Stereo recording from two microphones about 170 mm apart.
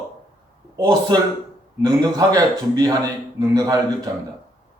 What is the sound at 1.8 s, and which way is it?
A man's voice, 25° right (ahead or behind).